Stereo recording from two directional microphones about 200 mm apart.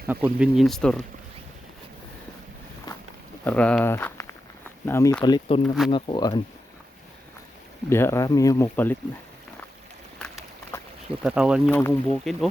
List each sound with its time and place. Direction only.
0.1 s speech: 5° right (ahead or behind)
3.4 s speech: 5° left (ahead or behind); by 6.4 s 20° left (ahead or behind)
7.9 s speech: 15° left (ahead or behind)
10.2 s a sound: 5° left (ahead or behind)
11.2 s speech: 5° right (ahead or behind)
11.7 s speech: 10° left (ahead or behind)